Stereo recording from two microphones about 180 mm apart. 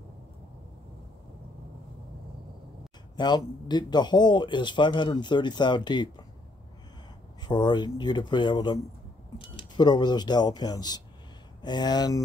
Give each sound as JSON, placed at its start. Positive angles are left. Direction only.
{"t": 3.2, "sound": "a man's voice", "side_deg": 25}
{"t": 7.4, "sound": "a man's voice", "side_deg": 25}